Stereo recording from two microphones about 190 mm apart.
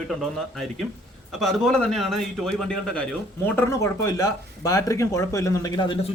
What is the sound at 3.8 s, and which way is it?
Speech, 20° left (ahead or behind).